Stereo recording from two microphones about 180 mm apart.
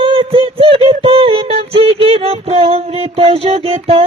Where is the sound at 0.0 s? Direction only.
30° right (ahead or behind).